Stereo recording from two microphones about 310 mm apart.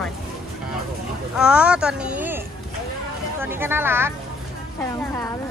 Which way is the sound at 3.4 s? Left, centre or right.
Centre.